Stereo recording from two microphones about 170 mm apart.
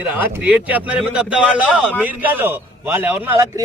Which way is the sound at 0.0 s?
10° right (ahead or behind).